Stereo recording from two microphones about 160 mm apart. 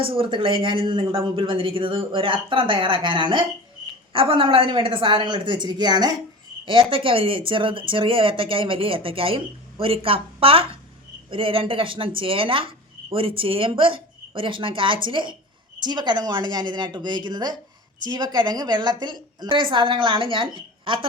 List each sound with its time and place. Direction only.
0.0 s a woman's voice: 35° right (ahead or behind)